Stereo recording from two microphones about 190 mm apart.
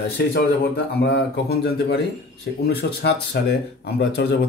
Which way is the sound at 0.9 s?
55° left (ahead or behind).